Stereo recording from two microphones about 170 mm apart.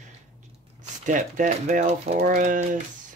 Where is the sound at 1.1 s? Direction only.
45° right (ahead or behind).